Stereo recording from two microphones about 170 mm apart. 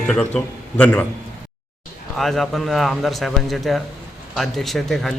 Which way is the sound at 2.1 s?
Centre (ahead or behind).